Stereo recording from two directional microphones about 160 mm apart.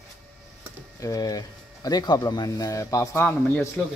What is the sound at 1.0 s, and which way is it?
Speech, 20° left (ahead or behind).